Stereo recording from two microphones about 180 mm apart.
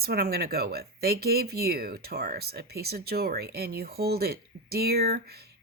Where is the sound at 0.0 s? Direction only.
60° right (ahead or behind).